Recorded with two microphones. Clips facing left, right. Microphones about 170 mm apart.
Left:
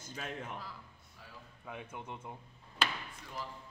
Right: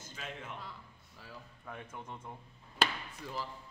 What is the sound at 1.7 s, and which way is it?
Speech, 10° left (ahead or behind).